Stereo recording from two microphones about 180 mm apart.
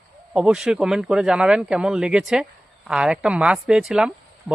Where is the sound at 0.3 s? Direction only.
5° right (ahead or behind).